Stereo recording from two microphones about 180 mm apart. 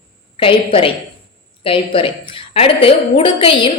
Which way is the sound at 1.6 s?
30° left (ahead or behind).